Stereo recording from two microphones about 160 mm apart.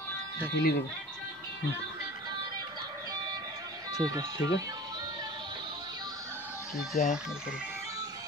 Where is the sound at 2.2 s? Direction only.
25° right (ahead or behind).